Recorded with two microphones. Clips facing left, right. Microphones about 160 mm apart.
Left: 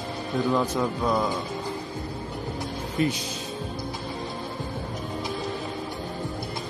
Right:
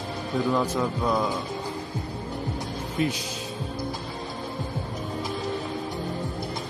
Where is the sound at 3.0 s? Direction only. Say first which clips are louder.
Left 1 dB; centre (ahead or behind).